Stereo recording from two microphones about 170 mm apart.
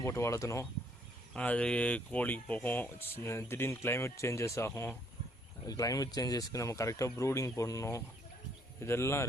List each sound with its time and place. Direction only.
0.0 s speech: 15° left (ahead or behind)
1.3 s speech: 5° left (ahead or behind)